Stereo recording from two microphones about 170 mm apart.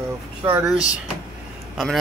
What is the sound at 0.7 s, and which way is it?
Speech, 5° right (ahead or behind).